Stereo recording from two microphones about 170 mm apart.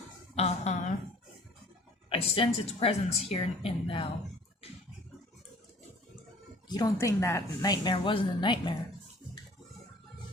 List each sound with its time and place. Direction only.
0.3 s a sound: 40° left (ahead or behind)
2.0 s a woman's voice: 35° left (ahead or behind)
6.7 s a woman's voice: 20° left (ahead or behind)